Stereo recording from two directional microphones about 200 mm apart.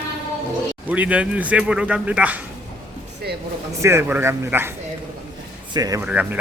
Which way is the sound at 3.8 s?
10° right (ahead or behind).